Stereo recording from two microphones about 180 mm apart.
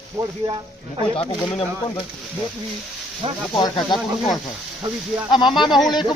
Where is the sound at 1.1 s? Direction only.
30° left (ahead or behind).